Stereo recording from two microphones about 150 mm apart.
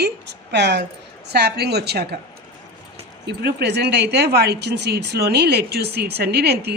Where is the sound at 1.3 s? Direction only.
90° right.